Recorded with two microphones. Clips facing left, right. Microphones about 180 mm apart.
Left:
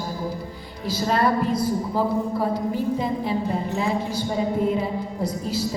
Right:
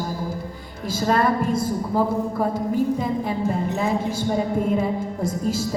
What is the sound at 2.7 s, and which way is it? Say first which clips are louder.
Speech: right 2 dB; 50° right (ahead or behind).